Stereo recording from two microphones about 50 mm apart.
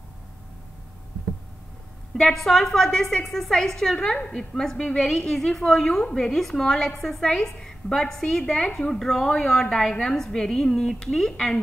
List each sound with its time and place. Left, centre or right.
2.1 s a woman's voice: centre